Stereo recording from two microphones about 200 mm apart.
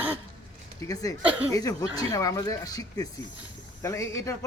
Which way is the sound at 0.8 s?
15° left (ahead or behind).